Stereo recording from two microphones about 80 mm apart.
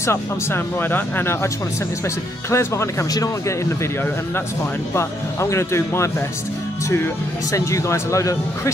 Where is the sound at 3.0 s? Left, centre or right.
Left.